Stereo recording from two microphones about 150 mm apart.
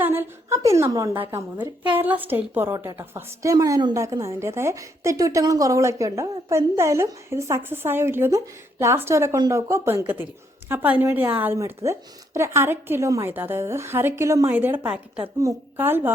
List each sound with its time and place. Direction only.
0.0 s a woman's voice: 15° right (ahead or behind)